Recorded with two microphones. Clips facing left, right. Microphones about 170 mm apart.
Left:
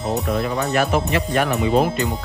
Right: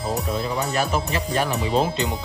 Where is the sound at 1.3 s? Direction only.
60° left (ahead or behind).